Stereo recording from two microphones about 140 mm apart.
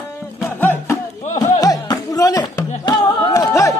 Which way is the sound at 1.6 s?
25° left (ahead or behind).